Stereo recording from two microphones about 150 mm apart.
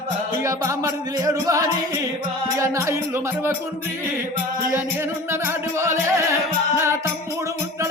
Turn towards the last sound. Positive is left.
turn(degrees=-15)  # may be behind; listen again after turning